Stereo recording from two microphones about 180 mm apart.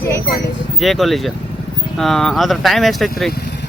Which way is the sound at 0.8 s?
Centre (ahead or behind).